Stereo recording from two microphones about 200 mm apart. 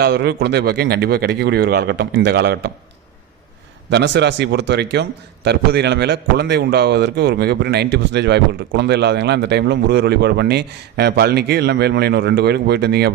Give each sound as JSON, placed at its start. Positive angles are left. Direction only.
{"t": 0.0, "sound": "speech", "side_deg": -55}
{"t": 3.8, "sound": "a man's voice", "side_deg": -60}